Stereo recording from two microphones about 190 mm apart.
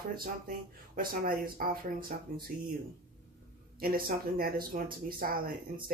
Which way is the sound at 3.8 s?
50° right (ahead or behind).